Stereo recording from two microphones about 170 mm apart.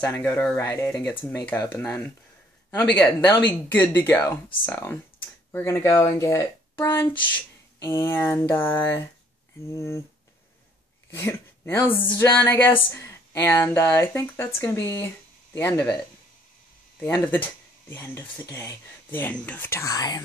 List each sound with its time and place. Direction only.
0.0 s speech: 15° left (ahead or behind)
11.1 s speech: 15° left (ahead or behind)
17.0 s speech: 10° left (ahead or behind)